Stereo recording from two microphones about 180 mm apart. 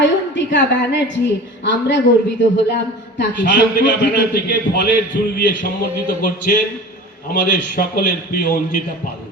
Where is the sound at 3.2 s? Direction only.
75° left (ahead or behind).